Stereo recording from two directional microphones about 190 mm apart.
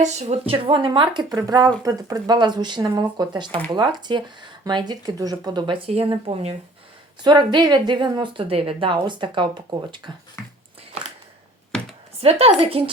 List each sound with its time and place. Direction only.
0.0 s speech: 35° right (ahead or behind)
12.2 s a woman's voice: 35° right (ahead or behind)